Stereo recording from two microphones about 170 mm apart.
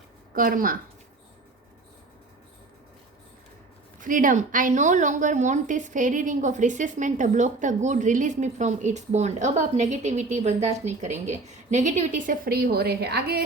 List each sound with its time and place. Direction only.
0.3 s speech: 55° right (ahead or behind)
4.0 s a woman's voice: 50° right (ahead or behind); by 13.4 s 70° right (ahead or behind)